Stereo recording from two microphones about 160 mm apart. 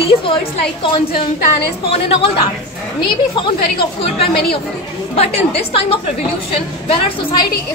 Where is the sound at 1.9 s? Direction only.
35° left (ahead or behind).